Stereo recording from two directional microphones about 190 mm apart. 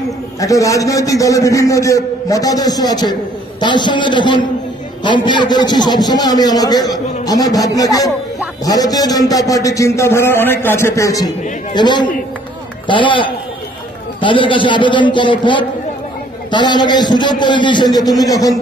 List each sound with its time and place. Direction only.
0.4 s a man's voice: 15° left (ahead or behind)